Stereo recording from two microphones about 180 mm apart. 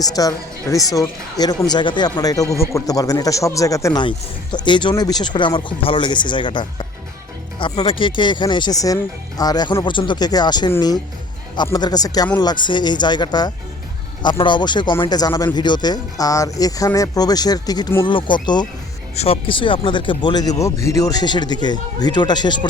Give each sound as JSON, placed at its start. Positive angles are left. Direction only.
{"t": 0.0, "sound": "speech", "side_deg": 20}